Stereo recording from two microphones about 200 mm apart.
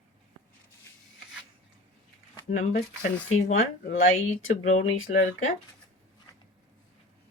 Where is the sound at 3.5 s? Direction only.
75° left (ahead or behind).